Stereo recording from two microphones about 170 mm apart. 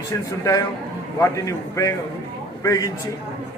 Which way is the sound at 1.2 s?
20° left (ahead or behind).